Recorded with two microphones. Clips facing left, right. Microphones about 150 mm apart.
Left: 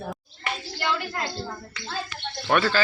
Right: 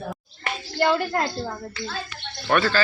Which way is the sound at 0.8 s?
50° right (ahead or behind).